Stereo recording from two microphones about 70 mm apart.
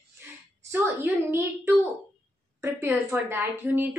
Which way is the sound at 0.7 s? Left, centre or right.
Right.